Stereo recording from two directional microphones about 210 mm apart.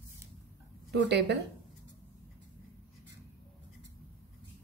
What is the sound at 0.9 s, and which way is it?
Speech, 55° right (ahead or behind).